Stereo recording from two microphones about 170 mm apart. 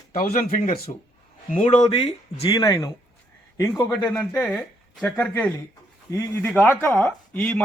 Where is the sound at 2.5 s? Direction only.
25° left (ahead or behind); by 5.3 s 5° left (ahead or behind).